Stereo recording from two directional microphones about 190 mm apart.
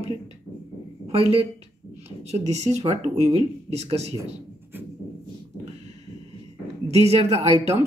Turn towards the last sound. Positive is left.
turn(degrees=-35)  # may be behind; listen again after turning